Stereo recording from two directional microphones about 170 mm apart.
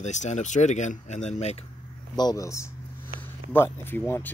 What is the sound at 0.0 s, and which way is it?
Speech, 45° left (ahead or behind).